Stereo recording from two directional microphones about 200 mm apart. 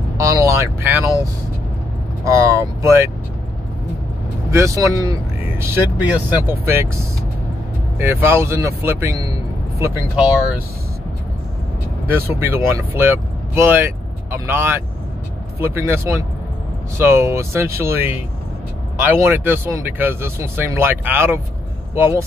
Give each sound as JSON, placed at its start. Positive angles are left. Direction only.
{"t": 0.2, "sound": "speech", "side_deg": -15}
{"t": 4.5, "sound": "speech", "side_deg": -15}
{"t": 8.0, "sound": "speech", "side_deg": -10}
{"t": 12.1, "sound": "speech", "side_deg": -10}